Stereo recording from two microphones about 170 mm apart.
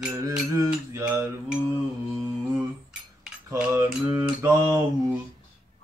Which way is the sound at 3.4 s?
15° right (ahead or behind).